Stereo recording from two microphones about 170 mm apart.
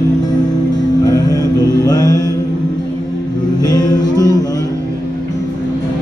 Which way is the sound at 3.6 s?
25° left (ahead or behind).